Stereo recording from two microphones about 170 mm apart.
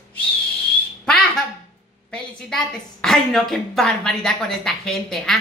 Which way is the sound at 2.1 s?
5° left (ahead or behind).